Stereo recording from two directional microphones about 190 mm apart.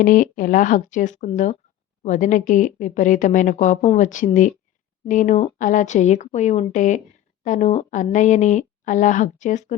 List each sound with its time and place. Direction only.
0.0 s a woman's voice: 45° left (ahead or behind)